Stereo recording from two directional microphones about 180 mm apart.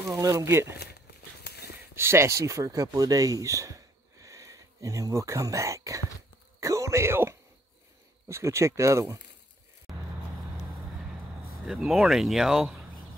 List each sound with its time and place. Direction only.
0.1 s speech: 20° right (ahead or behind)
1.4 s a sound: 60° left (ahead or behind)
2.0 s speech: 15° right (ahead or behind)
6.6 s insect: 15° right (ahead or behind)
8.3 s speech: 15° right (ahead or behind)
11.6 s speech: 5° right (ahead or behind)